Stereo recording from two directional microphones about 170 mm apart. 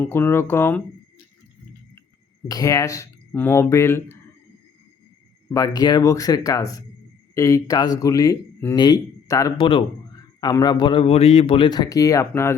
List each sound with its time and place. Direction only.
0.0 s speech: 10° left (ahead or behind)
2.5 s speech: 20° left (ahead or behind)
5.5 s speech: 20° left (ahead or behind)